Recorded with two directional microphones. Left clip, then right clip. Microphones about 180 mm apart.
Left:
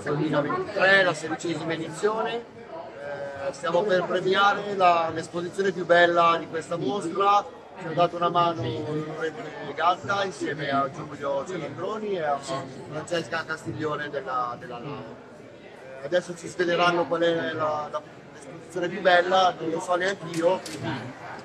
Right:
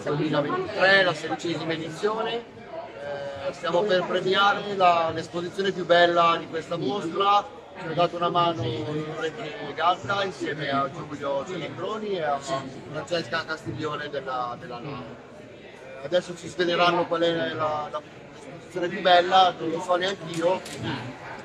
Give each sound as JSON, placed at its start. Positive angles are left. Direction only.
{"t": 0.2, "sound": "a man's voice", "side_deg": 0}
{"t": 3.6, "sound": "a man's voice", "side_deg": 0}
{"t": 13.5, "sound": "a man's voice", "side_deg": 15}
{"t": 14.4, "sound": "a man's voice", "side_deg": 0}
{"t": 16.1, "sound": "a man's voice", "side_deg": 10}